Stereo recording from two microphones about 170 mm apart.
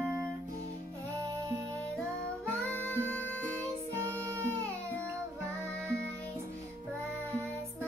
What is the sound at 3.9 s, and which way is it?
Music, 15° right (ahead or behind).